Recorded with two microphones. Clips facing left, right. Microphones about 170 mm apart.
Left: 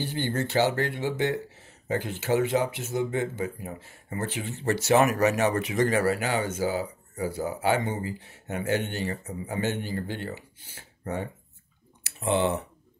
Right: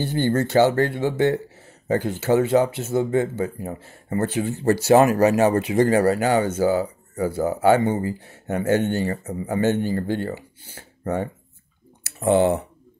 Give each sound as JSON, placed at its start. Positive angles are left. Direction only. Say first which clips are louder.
{"t": 0.0, "sound": "speech", "louder": "right 8 dB", "side_deg": -45}
{"t": 2.5, "sound": "speech", "louder": "right 7 dB", "side_deg": -45}